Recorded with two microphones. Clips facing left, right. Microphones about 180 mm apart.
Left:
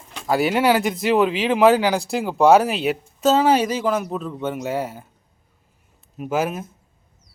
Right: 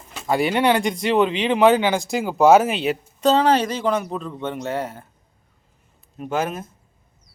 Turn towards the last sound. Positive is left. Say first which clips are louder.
# left 1 dB
turn(degrees=5)  # may be behind; listen again after turning